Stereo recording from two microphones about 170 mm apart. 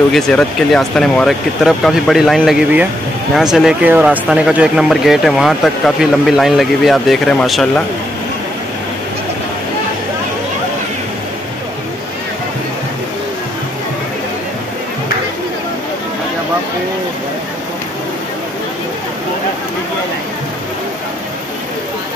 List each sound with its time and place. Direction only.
0.1 s speech: 5° left (ahead or behind)